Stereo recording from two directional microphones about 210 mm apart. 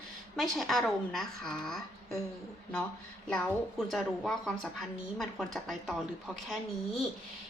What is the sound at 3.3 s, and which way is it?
Speech, centre (ahead or behind).